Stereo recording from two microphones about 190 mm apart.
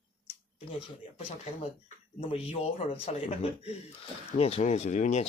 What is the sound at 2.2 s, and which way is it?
Speech, 30° left (ahead or behind).